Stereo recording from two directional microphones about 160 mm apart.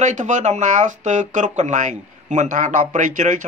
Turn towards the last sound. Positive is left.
turn(degrees=-50)  # may be behind; listen again after turning